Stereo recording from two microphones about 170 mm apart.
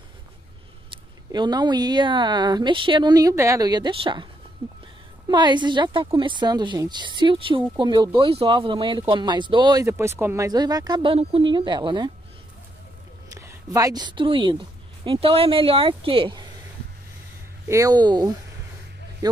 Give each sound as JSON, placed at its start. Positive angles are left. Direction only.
{"t": 1.3, "sound": "speech", "side_deg": -25}
{"t": 4.6, "sound": "a sound", "side_deg": -30}
{"t": 5.3, "sound": "speech", "side_deg": -25}
{"t": 13.3, "sound": "a woman's voice", "side_deg": -20}
{"t": 17.6, "sound": "speech", "side_deg": -20}